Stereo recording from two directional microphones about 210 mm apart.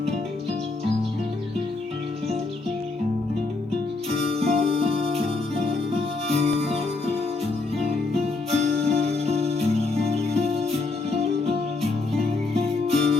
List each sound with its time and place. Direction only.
4.4 s music: 30° right (ahead or behind)
8.2 s music: 30° right (ahead or behind)